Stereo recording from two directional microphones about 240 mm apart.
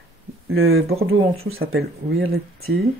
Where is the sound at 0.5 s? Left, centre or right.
Right.